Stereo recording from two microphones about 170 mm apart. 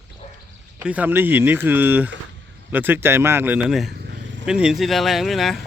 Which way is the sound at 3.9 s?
85° right.